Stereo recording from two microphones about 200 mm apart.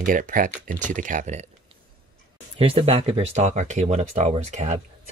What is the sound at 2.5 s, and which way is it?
Speech, 30° right (ahead or behind).